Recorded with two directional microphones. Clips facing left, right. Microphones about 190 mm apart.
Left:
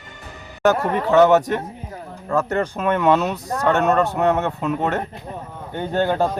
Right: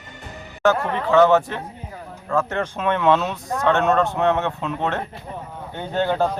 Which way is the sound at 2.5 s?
5° left (ahead or behind).